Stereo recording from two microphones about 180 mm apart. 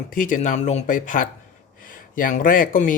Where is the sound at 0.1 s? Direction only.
45° left (ahead or behind).